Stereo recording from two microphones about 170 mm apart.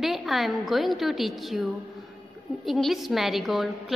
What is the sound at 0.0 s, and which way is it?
A woman's voice, centre (ahead or behind).